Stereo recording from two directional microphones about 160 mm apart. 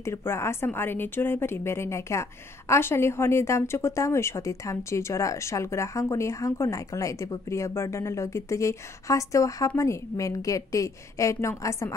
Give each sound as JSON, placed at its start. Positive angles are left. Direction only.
{"t": 0.0, "sound": "a woman's voice", "side_deg": 15}